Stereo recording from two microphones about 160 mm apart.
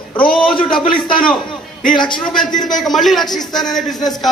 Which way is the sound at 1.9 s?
30° left (ahead or behind).